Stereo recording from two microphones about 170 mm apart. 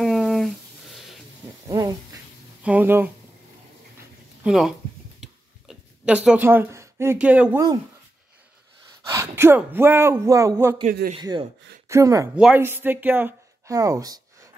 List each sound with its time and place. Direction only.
0.0 s a sound: centre (ahead or behind)
1.7 s a sound: 20° right (ahead or behind)
2.6 s a man's voice: 10° right (ahead or behind)
4.4 s speech: centre (ahead or behind)
5.2 s a sound: 5° right (ahead or behind)
9.1 s a man's voice: 15° right (ahead or behind)
10.9 s a man's voice: 55° right (ahead or behind)
11.1 s speech: 25° right (ahead or behind)
12.4 s speech: 10° right (ahead or behind)